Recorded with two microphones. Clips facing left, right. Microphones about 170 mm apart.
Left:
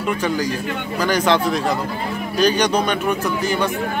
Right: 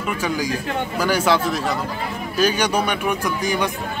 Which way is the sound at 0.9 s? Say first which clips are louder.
Left 2 dB; 10° right (ahead or behind).